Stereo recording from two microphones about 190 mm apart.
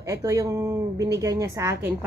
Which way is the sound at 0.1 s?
15° right (ahead or behind).